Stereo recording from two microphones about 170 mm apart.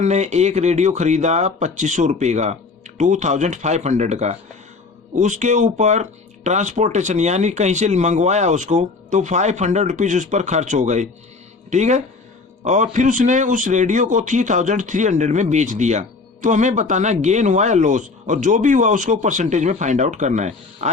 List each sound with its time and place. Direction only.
0.0 s speech: 45° right (ahead or behind)